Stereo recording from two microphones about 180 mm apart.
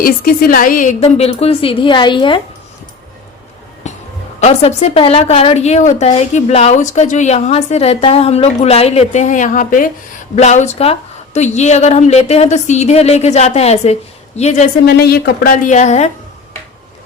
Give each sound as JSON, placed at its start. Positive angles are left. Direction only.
{"t": 0.0, "sound": "a woman's voice", "side_deg": 50}
{"t": 4.4, "sound": "a woman's voice", "side_deg": 40}
{"t": 14.8, "sound": "speech", "side_deg": 60}
{"t": 15.5, "sound": "a woman's voice", "side_deg": 40}